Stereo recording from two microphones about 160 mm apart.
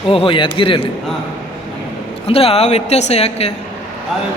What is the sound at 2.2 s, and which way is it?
A woman's voice, 35° left (ahead or behind).